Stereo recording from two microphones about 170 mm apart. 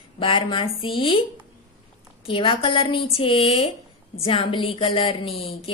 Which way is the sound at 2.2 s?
30° left (ahead or behind).